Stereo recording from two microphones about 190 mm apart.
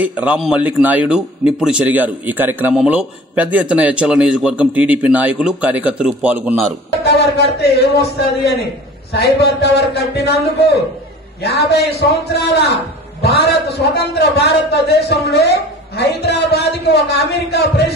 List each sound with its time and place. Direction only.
0.0 s a man's voice: 5° right (ahead or behind)
7.1 s a man's voice: 60° left (ahead or behind)